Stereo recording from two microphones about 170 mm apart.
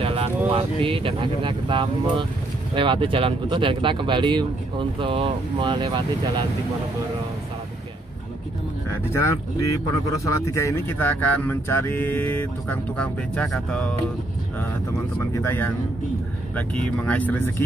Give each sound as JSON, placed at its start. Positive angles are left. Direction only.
{"t": 0.0, "sound": "a sound", "side_deg": -35}
{"t": 0.5, "sound": "speech", "side_deg": -30}
{"t": 9.1, "sound": "speech", "side_deg": 20}
{"t": 15.4, "sound": "speech", "side_deg": 10}